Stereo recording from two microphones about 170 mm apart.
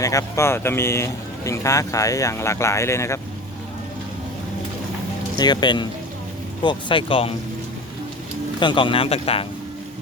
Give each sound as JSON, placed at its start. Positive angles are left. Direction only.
{"t": 0.0, "sound": "speech", "side_deg": 20}
{"t": 5.4, "sound": "speech", "side_deg": 25}
{"t": 8.5, "sound": "speech", "side_deg": 30}